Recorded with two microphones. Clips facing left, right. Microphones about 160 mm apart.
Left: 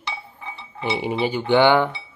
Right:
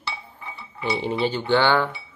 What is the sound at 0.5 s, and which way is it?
Dishes, 25° left (ahead or behind).